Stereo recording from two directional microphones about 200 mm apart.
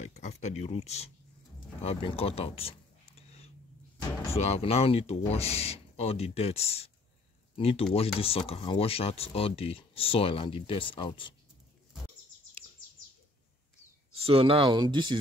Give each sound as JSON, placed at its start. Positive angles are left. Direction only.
{"t": 0.0, "sound": "speech", "side_deg": 35}
{"t": 4.3, "sound": "speech", "side_deg": 30}
{"t": 14.2, "sound": "speech", "side_deg": -30}